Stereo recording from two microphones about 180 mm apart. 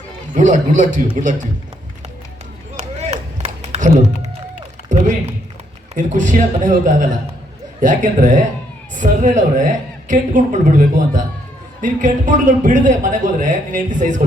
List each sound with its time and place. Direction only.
0.3 s a man's voice: 45° right (ahead or behind)
2.7 s run: 35° right (ahead or behind)
4.9 s a man's voice: 45° right (ahead or behind)